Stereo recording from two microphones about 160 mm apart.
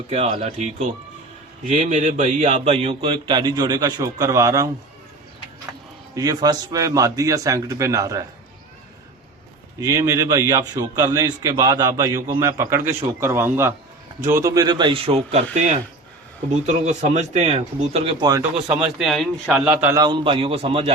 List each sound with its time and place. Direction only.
0.1 s a man's voice: 40° right (ahead or behind); by 4.7 s 20° right (ahead or behind)
6.1 s a man's voice: 25° right (ahead or behind)
9.8 s a man's voice: 20° right (ahead or behind); by 15.4 s 40° right (ahead or behind)
16.6 s speech: 45° right (ahead or behind)
18.9 s speech: centre (ahead or behind)
20.0 s a man's voice: 30° right (ahead or behind)